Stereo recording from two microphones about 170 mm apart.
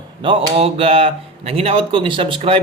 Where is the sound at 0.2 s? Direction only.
30° right (ahead or behind).